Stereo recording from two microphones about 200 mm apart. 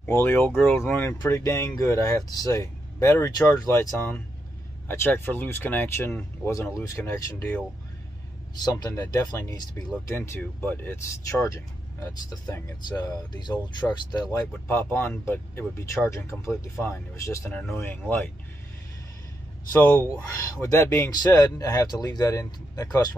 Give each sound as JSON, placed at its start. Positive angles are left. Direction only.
{"t": 0.0, "sound": "speech", "side_deg": 10}
{"t": 19.7, "sound": "speech", "side_deg": 10}